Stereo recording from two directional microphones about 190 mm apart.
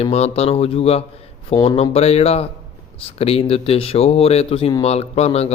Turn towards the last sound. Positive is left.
turn(degrees=35)  # may be behind; listen again after turning